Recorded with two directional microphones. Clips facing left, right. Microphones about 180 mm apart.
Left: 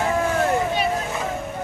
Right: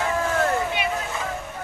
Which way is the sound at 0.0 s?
25° left (ahead or behind).